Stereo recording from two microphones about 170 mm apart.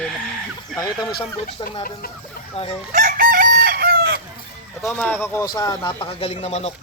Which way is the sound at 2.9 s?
45° right (ahead or behind).